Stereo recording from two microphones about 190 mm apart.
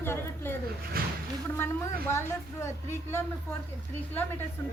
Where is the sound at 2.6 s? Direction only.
10° left (ahead or behind).